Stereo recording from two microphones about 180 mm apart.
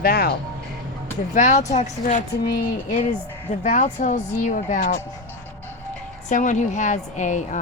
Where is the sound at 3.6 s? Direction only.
45° left (ahead or behind).